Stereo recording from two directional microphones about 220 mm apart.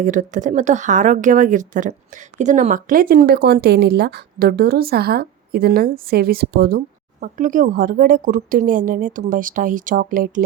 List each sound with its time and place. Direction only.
0.0 s speech: 35° right (ahead or behind)